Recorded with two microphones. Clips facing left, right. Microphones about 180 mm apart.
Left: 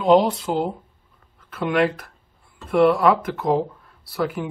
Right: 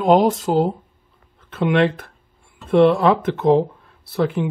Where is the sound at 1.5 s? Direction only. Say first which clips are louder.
Right 3 dB; 25° right (ahead or behind).